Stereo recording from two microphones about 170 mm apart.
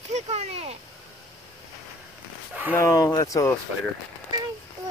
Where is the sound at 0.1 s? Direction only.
40° right (ahead or behind).